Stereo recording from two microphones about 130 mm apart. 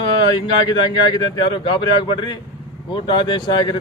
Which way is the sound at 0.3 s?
35° left (ahead or behind).